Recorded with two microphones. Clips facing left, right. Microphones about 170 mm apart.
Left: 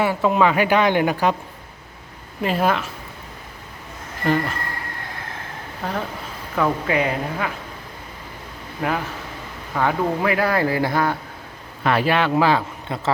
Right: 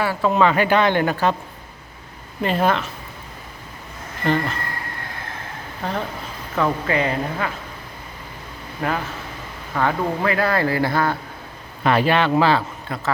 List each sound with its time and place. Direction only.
0.0 s speech: 20° left (ahead or behind)
2.4 s speech: 5° left (ahead or behind)
4.2 s speech: 5° left (ahead or behind)
5.8 s speech: 5° left (ahead or behind)
9.7 s speech: 15° left (ahead or behind)
11.8 s speech: 5° left (ahead or behind)